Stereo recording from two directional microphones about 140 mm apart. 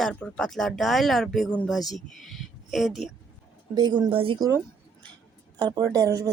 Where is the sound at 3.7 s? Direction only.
30° right (ahead or behind).